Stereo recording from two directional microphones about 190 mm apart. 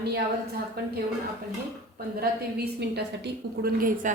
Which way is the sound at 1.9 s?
55° right (ahead or behind).